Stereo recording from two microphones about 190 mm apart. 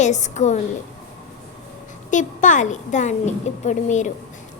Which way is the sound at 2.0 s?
40° left (ahead or behind).